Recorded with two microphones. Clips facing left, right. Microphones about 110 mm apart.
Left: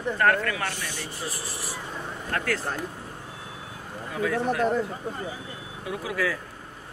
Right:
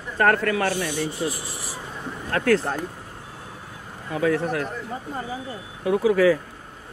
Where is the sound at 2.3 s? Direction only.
45° right (ahead or behind).